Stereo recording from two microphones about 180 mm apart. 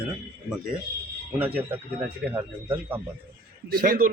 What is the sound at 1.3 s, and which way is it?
A man's voice, 10° right (ahead or behind).